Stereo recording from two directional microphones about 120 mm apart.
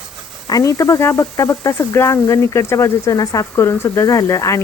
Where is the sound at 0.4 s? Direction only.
30° left (ahead or behind).